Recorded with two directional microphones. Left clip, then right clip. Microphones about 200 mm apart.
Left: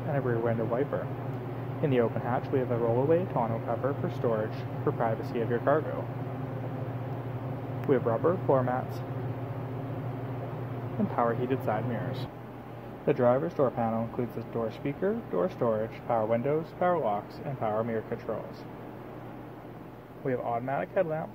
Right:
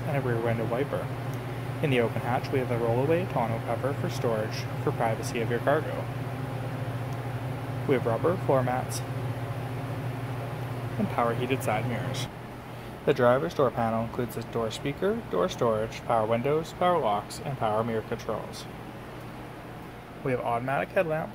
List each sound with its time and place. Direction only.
0.1 s speech: 5° right (ahead or behind)
7.9 s speech: 5° right (ahead or behind)
11.1 s speech: centre (ahead or behind)
20.2 s speech: 20° right (ahead or behind)